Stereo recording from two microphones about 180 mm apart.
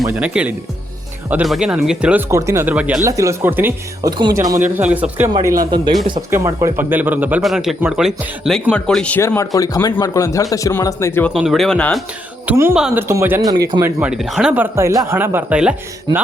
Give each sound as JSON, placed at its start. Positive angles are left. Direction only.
{"t": 0.0, "sound": "speech", "side_deg": -10}
{"t": 4.6, "sound": "speech", "side_deg": -10}
{"t": 11.3, "sound": "speech", "side_deg": 0}
{"t": 12.5, "sound": "speech", "side_deg": -10}
{"t": 13.8, "sound": "speech", "side_deg": -5}